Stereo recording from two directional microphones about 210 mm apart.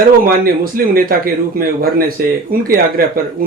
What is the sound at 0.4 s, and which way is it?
Speech, 45° right (ahead or behind).